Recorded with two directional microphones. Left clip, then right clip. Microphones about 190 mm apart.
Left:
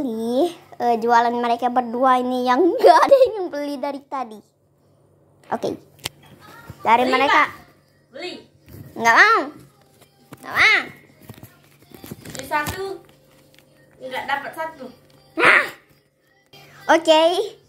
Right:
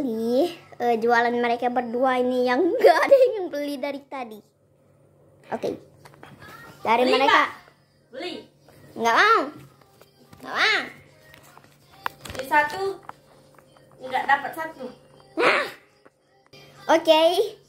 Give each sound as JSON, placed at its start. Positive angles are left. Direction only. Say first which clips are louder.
{"t": 0.0, "sound": "a woman's voice", "louder": "left 2 dB", "side_deg": 0}
{"t": 3.4, "sound": "a woman's voice", "louder": "left 3 dB", "side_deg": 0}
{"t": 5.5, "sound": "a woman's voice", "louder": "left 4 dB", "side_deg": 10}
{"t": 6.8, "sound": "a woman's voice", "louder": "left 3 dB", "side_deg": 5}
{"t": 8.9, "sound": "a woman's voice", "louder": "left 4 dB", "side_deg": 10}
{"t": 14.1, "sound": "a woman's voice", "louder": "right 3 dB", "side_deg": -20}
{"t": 15.3, "sound": "music", "louder": "left 6 dB", "side_deg": 10}
{"t": 16.6, "sound": "speech", "louder": "left 3 dB", "side_deg": 5}